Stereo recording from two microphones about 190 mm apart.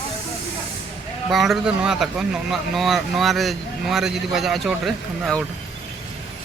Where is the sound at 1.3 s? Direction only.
Centre (ahead or behind).